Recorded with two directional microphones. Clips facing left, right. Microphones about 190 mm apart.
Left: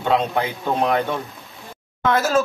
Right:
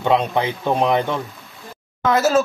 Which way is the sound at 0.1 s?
15° right (ahead or behind).